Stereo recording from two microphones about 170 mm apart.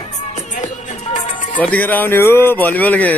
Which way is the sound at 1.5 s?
10° left (ahead or behind).